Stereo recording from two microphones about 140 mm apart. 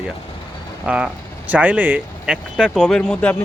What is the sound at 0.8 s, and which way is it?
Speech, 5° right (ahead or behind).